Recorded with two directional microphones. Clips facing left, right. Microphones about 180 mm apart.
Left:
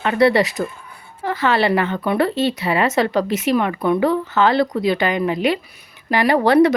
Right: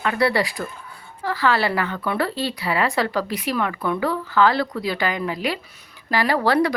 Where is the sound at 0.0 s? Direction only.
25° left (ahead or behind).